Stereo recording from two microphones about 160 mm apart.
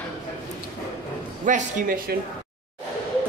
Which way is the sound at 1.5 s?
60° right (ahead or behind).